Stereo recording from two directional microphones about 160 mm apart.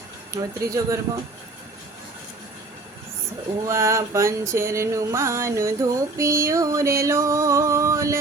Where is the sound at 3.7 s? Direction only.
15° right (ahead or behind).